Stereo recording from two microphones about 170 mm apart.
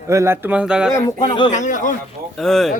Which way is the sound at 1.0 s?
25° left (ahead or behind).